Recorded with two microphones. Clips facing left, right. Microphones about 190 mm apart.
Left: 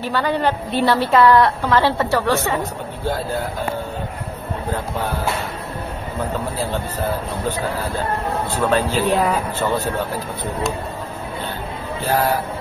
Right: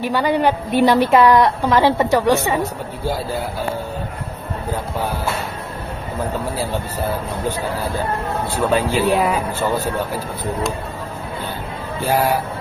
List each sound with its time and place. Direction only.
0.0 s a woman's voice: 15° right (ahead or behind)
8.5 s a woman's voice: 10° right (ahead or behind)
12.0 s a woman's voice: 10° right (ahead or behind)